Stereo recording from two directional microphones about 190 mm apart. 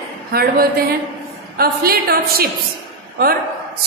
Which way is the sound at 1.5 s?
55° right (ahead or behind).